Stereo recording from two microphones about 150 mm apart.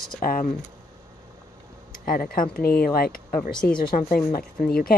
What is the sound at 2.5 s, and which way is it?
Speech, 90° left.